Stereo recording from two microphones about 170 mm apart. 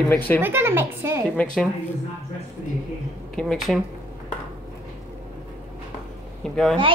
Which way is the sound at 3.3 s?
5° left (ahead or behind).